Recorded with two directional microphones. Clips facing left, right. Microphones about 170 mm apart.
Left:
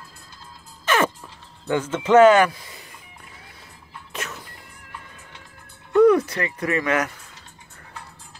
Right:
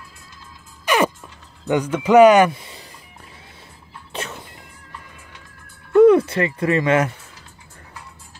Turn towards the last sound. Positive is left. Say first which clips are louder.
# right 5 dB
turn(degrees=-25)  # may be behind; listen again after turning